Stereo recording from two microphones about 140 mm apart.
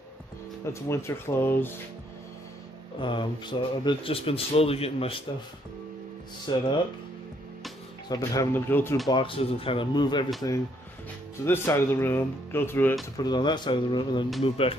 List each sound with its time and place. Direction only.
0.8 s speech: 20° left (ahead or behind)
3.0 s speech: 35° left (ahead or behind)
6.5 s speech: 30° left (ahead or behind)
8.1 s speech: 25° left (ahead or behind)
9.1 s speech: 40° left (ahead or behind); by 12.9 s 15° left (ahead or behind)
13.2 s speech: 30° left (ahead or behind)